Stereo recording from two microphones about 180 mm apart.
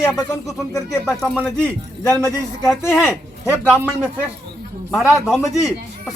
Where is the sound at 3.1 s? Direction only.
15° left (ahead or behind).